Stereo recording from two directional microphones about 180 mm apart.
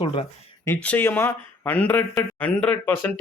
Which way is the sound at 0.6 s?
10° left (ahead or behind).